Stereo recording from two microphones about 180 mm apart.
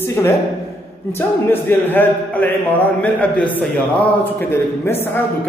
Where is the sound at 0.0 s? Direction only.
15° left (ahead or behind).